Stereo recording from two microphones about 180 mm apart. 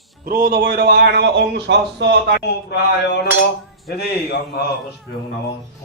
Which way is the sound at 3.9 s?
60° left (ahead or behind).